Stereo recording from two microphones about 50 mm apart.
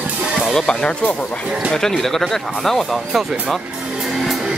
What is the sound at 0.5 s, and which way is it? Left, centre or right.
Speech, centre.